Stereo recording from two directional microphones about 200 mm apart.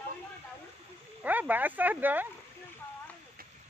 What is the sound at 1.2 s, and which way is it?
Speech, 10° right (ahead or behind).